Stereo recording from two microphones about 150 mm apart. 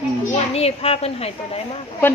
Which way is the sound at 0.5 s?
40° left (ahead or behind).